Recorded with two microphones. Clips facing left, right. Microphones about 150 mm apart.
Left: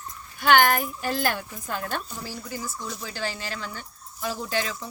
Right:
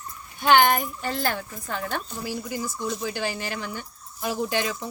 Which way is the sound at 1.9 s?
15° right (ahead or behind).